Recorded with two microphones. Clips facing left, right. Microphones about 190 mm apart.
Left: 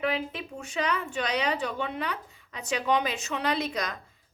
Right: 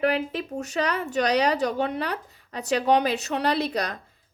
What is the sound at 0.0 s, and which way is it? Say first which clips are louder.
Speech: right 6 dB; 40° right (ahead or behind).